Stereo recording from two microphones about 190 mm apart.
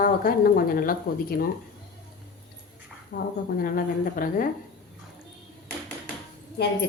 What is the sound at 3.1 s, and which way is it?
Speech, 50° left (ahead or behind).